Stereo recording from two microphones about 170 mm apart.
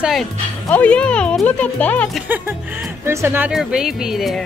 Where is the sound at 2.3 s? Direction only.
10° right (ahead or behind).